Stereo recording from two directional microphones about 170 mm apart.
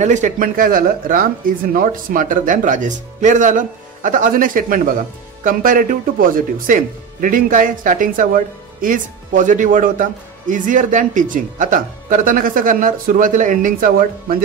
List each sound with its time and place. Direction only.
0.0 s speech: 45° right (ahead or behind)